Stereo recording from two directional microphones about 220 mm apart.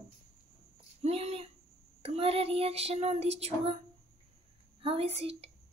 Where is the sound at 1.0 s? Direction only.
30° right (ahead or behind).